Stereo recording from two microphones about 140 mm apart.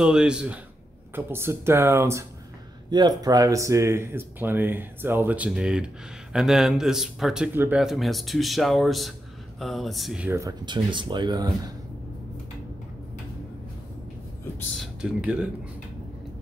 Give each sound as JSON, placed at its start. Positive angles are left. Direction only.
{"t": 0.0, "sound": "speech", "side_deg": -5}
{"t": 1.1, "sound": "speech", "side_deg": -15}
{"t": 2.9, "sound": "a man's voice", "side_deg": -30}
{"t": 7.8, "sound": "a man's voice", "side_deg": 0}
{"t": 10.3, "sound": "speech", "side_deg": -25}
{"t": 14.8, "sound": "speech", "side_deg": -5}